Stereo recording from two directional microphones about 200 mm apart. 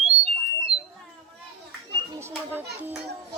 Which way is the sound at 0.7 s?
5° right (ahead or behind).